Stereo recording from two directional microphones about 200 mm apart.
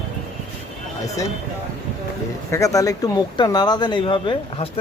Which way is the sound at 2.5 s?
15° left (ahead or behind).